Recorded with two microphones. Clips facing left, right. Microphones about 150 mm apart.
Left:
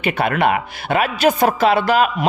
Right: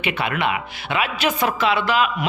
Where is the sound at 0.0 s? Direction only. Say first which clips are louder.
Left 5 dB; 45° left (ahead or behind).